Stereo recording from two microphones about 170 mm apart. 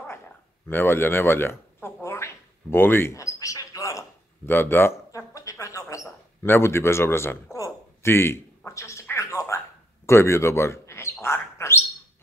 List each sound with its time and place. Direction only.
0.7 s a sound: 15° left (ahead or behind)
10.0 s speech: 15° left (ahead or behind)
11.2 s bird: 15° left (ahead or behind)